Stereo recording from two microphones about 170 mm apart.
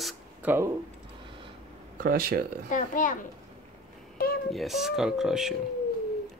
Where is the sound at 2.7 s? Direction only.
50° left (ahead or behind).